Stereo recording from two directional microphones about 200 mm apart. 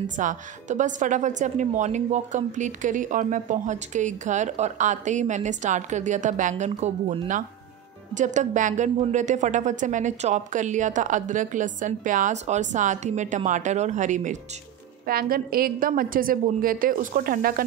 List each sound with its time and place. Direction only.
0.0 s a woman's voice: 40° right (ahead or behind)